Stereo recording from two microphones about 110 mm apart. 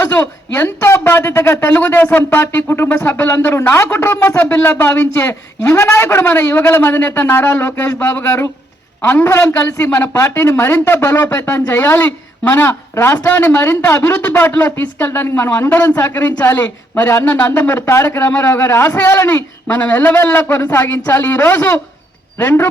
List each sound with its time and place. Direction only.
0.0 s speech: 20° left (ahead or behind)